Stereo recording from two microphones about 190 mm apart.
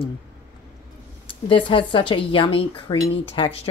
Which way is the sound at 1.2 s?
25° left (ahead or behind).